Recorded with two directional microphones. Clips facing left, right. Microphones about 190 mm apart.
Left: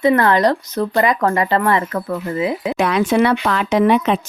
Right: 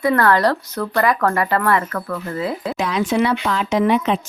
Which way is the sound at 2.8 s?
60° left (ahead or behind).